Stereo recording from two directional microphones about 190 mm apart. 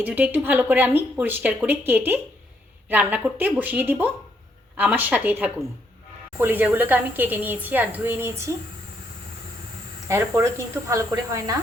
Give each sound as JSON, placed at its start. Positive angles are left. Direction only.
{"t": 0.0, "sound": "a woman's voice", "side_deg": -10}
{"t": 10.1, "sound": "a woman's voice", "side_deg": -15}